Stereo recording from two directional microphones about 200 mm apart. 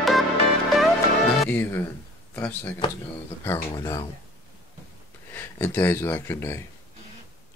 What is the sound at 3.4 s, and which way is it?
Speech, 15° left (ahead or behind).